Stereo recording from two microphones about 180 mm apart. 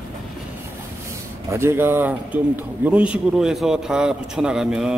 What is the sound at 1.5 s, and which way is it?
A man's voice, 15° right (ahead or behind).